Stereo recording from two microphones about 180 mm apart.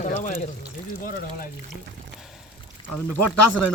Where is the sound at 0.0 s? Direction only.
45° left (ahead or behind).